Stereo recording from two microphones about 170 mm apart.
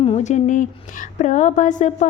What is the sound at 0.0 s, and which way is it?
Speech, 40° left (ahead or behind).